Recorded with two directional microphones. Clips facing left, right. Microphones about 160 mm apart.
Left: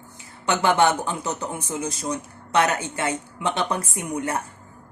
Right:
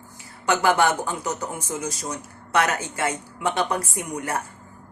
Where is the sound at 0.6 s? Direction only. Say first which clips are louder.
Left 2 dB; 25° left (ahead or behind).